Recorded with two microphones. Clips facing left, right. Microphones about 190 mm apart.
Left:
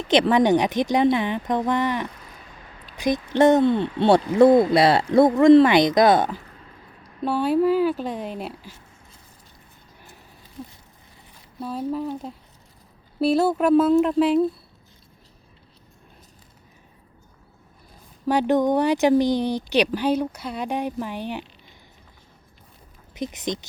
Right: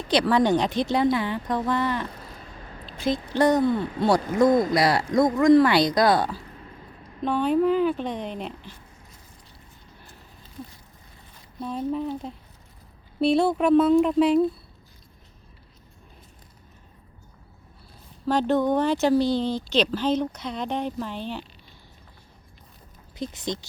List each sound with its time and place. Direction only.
0.0 s speech: 20° left (ahead or behind)
7.3 s a woman's voice: 10° left (ahead or behind)
11.6 s a woman's voice: 5° left (ahead or behind)
18.3 s speech: 15° left (ahead or behind)
23.1 s speech: 20° left (ahead or behind)